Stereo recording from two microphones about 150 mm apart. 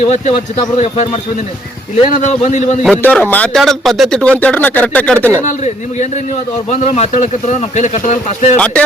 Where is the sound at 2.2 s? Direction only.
50° left (ahead or behind).